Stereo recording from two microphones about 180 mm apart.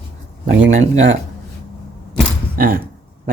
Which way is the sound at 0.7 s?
40° right (ahead or behind).